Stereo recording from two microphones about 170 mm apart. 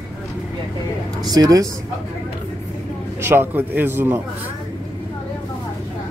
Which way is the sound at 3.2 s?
15° right (ahead or behind).